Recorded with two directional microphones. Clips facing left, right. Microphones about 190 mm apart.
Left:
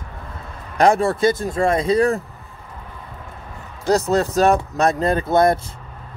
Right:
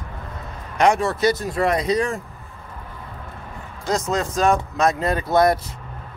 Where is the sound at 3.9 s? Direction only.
35° left (ahead or behind).